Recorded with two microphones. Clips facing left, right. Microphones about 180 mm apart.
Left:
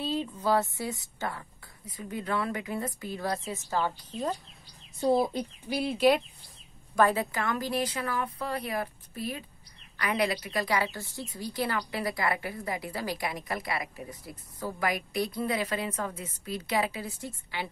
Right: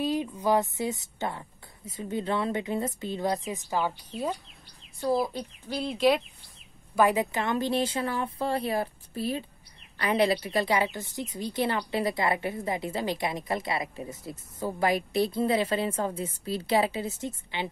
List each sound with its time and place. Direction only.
0.0 s a woman's voice: 15° right (ahead or behind)
5.0 s speech: 20° left (ahead or behind)
5.7 s speech: 5° left (ahead or behind)
7.0 s a woman's voice: 15° right (ahead or behind)